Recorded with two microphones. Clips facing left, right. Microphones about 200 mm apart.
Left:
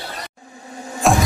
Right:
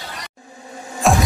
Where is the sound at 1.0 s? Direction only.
Centre (ahead or behind).